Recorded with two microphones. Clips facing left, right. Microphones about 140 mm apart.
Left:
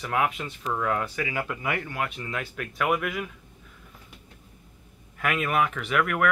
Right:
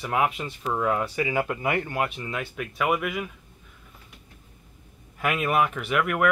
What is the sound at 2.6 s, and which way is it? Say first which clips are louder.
Speech: right 1 dB; 5° right (ahead or behind).